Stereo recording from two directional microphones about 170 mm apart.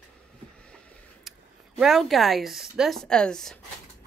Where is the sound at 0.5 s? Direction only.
5° left (ahead or behind).